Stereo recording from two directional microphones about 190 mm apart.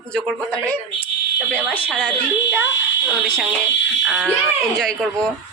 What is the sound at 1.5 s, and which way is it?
Speech, 5° left (ahead or behind).